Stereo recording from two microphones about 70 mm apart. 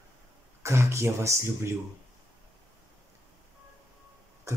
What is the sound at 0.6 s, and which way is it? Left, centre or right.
Speech, right.